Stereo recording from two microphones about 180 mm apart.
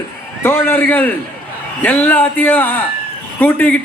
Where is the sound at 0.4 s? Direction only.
15° left (ahead or behind).